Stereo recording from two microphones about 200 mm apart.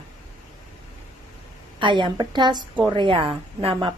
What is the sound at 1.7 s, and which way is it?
A woman's voice, 25° right (ahead or behind).